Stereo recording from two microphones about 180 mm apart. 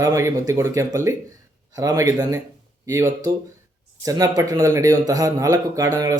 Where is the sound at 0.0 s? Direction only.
15° right (ahead or behind).